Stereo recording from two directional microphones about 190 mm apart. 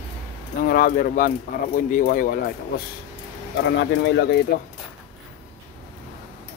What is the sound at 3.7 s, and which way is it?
Speech, 65° left (ahead or behind).